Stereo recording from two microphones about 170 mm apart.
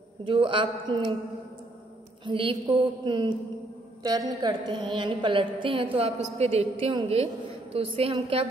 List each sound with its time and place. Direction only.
0.2 s music: 30° right (ahead or behind)
2.2 s music: 30° right (ahead or behind)
7.7 s a woman's voice: 35° right (ahead or behind)